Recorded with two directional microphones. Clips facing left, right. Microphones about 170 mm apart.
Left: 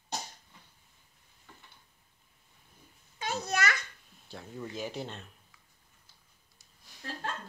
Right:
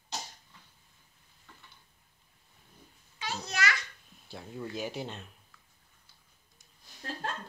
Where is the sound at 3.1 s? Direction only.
50° left (ahead or behind).